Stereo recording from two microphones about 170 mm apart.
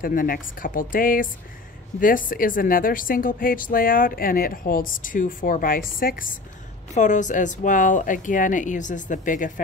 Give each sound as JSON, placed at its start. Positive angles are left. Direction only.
{"t": 0.0, "sound": "a woman's voice", "side_deg": 55}
{"t": 6.9, "sound": "speech", "side_deg": 45}